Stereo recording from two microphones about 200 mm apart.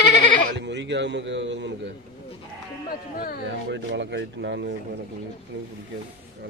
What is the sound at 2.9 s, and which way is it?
Speech, 45° left (ahead or behind).